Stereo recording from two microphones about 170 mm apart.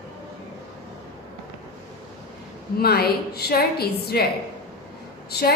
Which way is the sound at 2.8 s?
65° left (ahead or behind).